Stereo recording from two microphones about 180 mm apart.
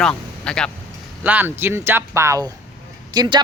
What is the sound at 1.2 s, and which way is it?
Speech, 10° right (ahead or behind).